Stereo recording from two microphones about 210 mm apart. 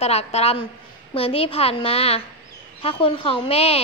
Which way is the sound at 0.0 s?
30° left (ahead or behind).